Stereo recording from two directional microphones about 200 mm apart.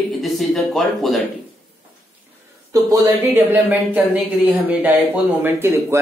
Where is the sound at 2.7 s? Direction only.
15° right (ahead or behind).